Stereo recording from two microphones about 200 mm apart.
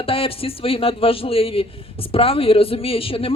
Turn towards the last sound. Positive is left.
turn(degrees=25)  # may be behind; listen again after turning